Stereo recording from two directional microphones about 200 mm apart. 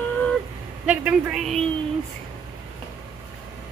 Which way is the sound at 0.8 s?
5° right (ahead or behind).